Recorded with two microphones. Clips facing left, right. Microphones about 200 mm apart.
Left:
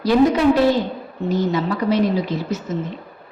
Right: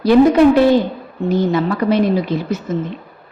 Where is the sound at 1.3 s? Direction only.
55° right (ahead or behind).